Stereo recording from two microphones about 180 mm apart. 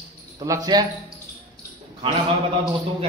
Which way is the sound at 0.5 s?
20° right (ahead or behind).